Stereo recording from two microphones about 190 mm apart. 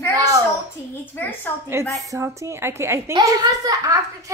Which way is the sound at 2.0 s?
15° right (ahead or behind).